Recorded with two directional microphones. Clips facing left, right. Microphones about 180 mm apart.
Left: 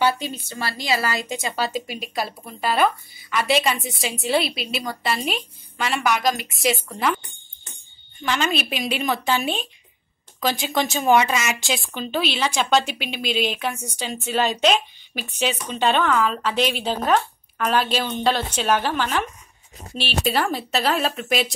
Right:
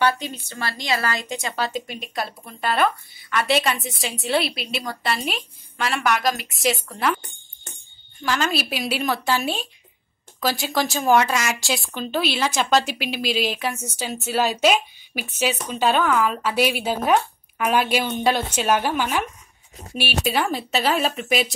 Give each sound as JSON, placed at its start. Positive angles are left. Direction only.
{"t": 0.0, "sound": "a woman's voice", "side_deg": 5}
{"t": 8.2, "sound": "a woman's voice", "side_deg": 0}